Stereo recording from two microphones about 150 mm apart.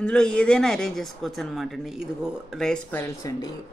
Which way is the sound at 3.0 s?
20° left (ahead or behind).